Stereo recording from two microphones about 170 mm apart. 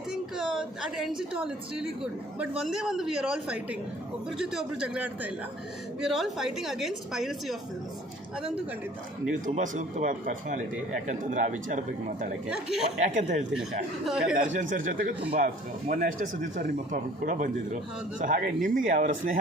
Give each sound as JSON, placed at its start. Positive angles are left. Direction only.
{"t": 0.1, "sound": "a sound", "side_deg": -5}
{"t": 1.5, "sound": "a man's voice", "side_deg": -5}
{"t": 9.3, "sound": "speech", "side_deg": -45}
{"t": 12.5, "sound": "a man's voice", "side_deg": -5}
{"t": 13.0, "sound": "speech", "side_deg": -45}
{"t": 14.0, "sound": "a man's voice", "side_deg": -5}
{"t": 14.3, "sound": "speech", "side_deg": -50}